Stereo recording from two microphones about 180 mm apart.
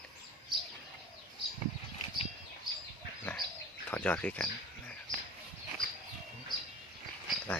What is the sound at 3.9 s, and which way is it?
Speech, 10° left (ahead or behind).